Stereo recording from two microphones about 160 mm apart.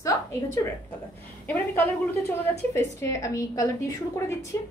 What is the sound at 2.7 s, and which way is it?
A woman's voice, 15° left (ahead or behind).